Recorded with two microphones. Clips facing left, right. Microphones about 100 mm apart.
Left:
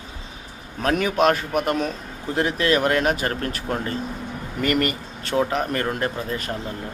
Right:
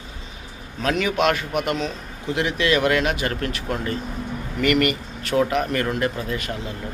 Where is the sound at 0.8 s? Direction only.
45° left (ahead or behind).